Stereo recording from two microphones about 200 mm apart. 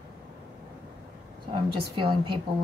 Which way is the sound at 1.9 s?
25° right (ahead or behind).